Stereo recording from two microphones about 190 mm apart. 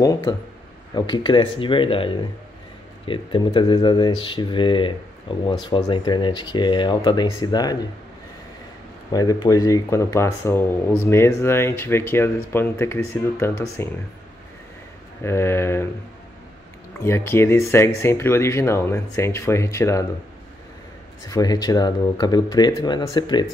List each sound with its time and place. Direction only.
0.0 s speech: 20° left (ahead or behind)
9.1 s speech: 20° left (ahead or behind)
15.2 s speech: 15° left (ahead or behind)
17.0 s speech: 15° left (ahead or behind)
21.3 s speech: 20° left (ahead or behind)